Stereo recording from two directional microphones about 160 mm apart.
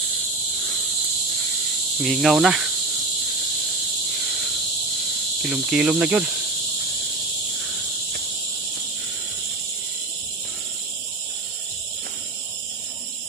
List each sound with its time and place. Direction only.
2.0 s cricket: centre (ahead or behind)
5.4 s cricket: 5° right (ahead or behind)